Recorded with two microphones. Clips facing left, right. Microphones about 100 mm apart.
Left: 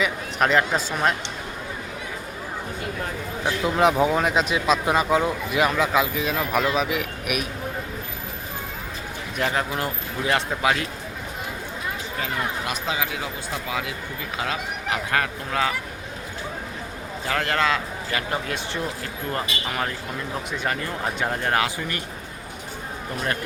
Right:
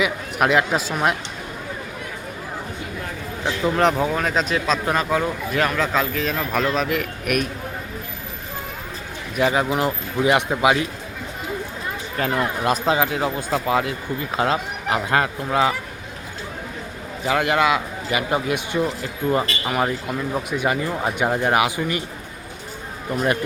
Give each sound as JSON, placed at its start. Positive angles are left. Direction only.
{"t": 0.0, "sound": "speech", "side_deg": -10}
{"t": 3.4, "sound": "speech", "side_deg": 5}
{"t": 9.3, "sound": "speech", "side_deg": -5}
{"t": 9.6, "sound": "speech", "side_deg": -20}
{"t": 12.2, "sound": "speech", "side_deg": -40}
{"t": 14.3, "sound": "speech", "side_deg": -35}
{"t": 17.2, "sound": "speech", "side_deg": -15}